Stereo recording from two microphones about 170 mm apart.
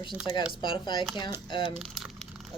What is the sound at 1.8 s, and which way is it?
Crumpling, centre (ahead or behind).